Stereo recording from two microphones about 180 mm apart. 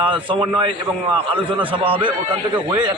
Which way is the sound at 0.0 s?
30° right (ahead or behind).